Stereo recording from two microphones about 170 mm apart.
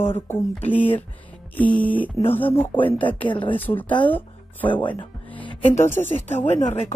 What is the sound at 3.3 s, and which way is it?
Speech, 30° left (ahead or behind).